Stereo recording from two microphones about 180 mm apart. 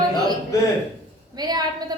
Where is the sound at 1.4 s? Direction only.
20° right (ahead or behind).